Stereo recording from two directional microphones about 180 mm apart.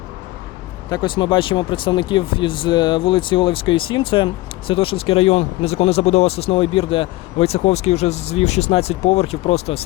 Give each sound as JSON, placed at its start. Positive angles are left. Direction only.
{"t": 0.9, "sound": "speech", "side_deg": 25}